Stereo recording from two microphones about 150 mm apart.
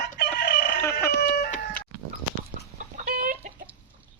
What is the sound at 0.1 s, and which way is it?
Chicken, 90° left.